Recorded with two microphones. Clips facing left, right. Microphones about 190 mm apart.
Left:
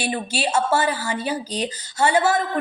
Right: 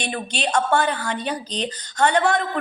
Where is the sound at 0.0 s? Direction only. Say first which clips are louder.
Left 2 dB; 5° left (ahead or behind).